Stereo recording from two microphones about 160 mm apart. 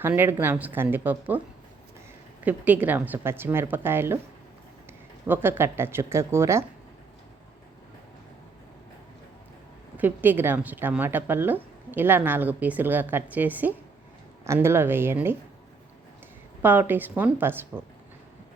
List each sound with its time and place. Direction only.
0.0 s speech: 15° right (ahead or behind)
2.4 s speech: 10° right (ahead or behind)
5.3 s speech: 15° right (ahead or behind)
10.0 s speech: 10° right (ahead or behind)
16.6 s speech: 10° right (ahead or behind)